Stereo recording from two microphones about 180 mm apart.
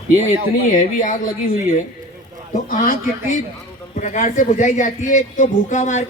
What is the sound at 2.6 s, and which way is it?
A man's voice, 45° left (ahead or behind).